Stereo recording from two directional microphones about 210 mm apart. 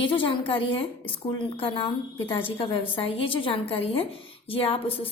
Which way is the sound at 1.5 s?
25° left (ahead or behind).